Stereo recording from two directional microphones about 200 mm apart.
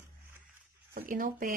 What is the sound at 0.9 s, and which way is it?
Speech, 45° right (ahead or behind).